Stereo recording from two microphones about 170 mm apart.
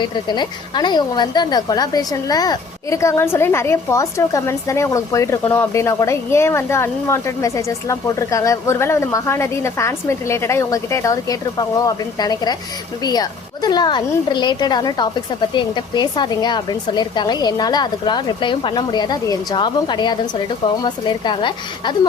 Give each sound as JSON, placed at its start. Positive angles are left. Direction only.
{"t": 0.0, "sound": "a woman's voice", "side_deg": 25}